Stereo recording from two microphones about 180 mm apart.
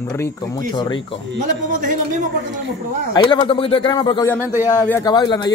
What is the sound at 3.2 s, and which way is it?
A man's voice, 30° left (ahead or behind).